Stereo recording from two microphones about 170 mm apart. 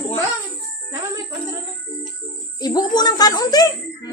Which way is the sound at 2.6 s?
25° left (ahead or behind).